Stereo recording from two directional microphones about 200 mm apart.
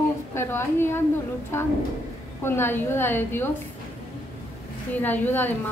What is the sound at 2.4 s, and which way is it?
A woman's voice, 10° left (ahead or behind).